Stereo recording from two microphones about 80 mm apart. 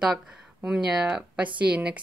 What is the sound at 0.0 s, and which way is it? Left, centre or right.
Speech, centre.